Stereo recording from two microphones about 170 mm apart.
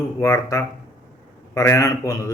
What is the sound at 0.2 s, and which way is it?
A man's voice, 15° left (ahead or behind).